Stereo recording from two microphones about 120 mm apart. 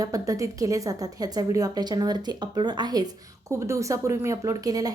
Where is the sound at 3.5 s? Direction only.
25° right (ahead or behind).